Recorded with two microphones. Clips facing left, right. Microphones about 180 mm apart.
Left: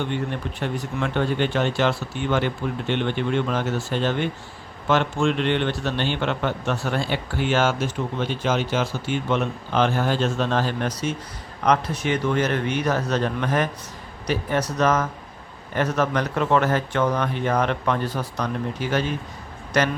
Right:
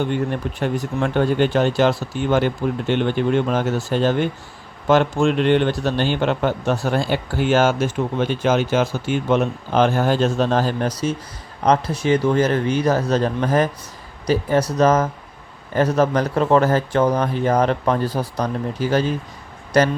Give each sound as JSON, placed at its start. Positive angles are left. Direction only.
{"t": 0.0, "sound": "a man's voice", "side_deg": -40}
{"t": 14.8, "sound": "a man's voice", "side_deg": -30}